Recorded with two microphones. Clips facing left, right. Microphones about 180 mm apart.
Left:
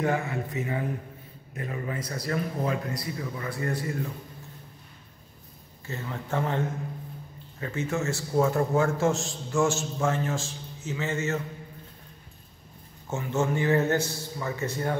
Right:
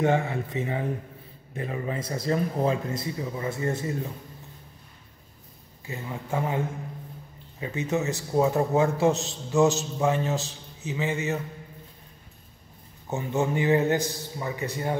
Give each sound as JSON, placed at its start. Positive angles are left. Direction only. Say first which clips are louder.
{"t": 0.0, "sound": "speech", "louder": "right 3 dB", "side_deg": -25}
{"t": 5.9, "sound": "a man's voice", "louder": "right 1 dB", "side_deg": -10}
{"t": 7.6, "sound": "a man's voice", "louder": "right 2 dB", "side_deg": -20}
{"t": 13.1, "sound": "a man's voice", "louder": "right 1 dB", "side_deg": -15}